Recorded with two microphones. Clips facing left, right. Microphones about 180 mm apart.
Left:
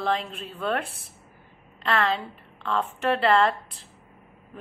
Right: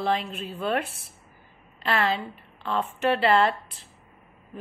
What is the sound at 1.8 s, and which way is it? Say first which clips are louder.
A woman's voice: even; 5° right (ahead or behind).